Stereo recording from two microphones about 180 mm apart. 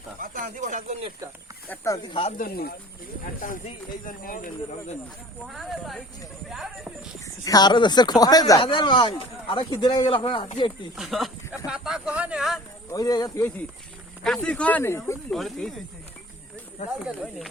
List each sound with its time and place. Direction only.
0.2 s speech: 45° right (ahead or behind)
1.7 s speech: 15° left (ahead or behind)
2.4 s speech: 60° left (ahead or behind)
3.4 s speech: 50° left (ahead or behind)
5.5 s speech: centre (ahead or behind)
7.4 s speech: 20° left (ahead or behind)
10.9 s speech: centre (ahead or behind)
12.9 s speech: 20° left (ahead or behind)
14.3 s speech: 5° left (ahead or behind)
15.3 s speech: centre (ahead or behind)